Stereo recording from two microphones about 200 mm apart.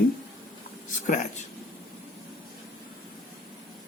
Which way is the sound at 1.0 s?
35° left (ahead or behind).